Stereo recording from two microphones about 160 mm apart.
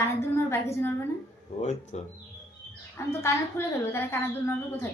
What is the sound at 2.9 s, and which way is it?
A woman's voice, 15° left (ahead or behind).